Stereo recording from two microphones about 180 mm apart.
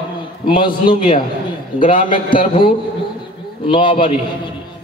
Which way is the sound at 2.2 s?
50° left (ahead or behind).